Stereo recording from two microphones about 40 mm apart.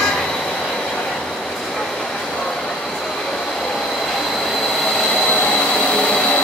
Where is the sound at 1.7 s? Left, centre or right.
Centre.